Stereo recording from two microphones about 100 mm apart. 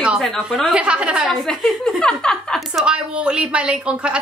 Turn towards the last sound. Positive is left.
turn(degrees=-10)  # may be behind; listen again after turning